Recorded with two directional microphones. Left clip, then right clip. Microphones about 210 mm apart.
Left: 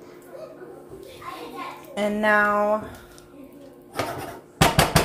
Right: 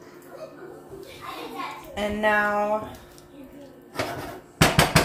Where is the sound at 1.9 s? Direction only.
35° left (ahead or behind).